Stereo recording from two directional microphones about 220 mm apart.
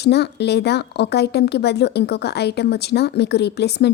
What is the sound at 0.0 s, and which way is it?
Speech, 50° left (ahead or behind).